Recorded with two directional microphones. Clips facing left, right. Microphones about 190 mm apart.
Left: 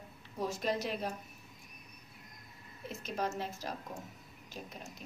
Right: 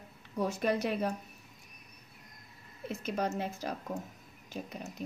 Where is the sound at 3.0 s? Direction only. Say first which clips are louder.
Right 3 dB; 60° right (ahead or behind).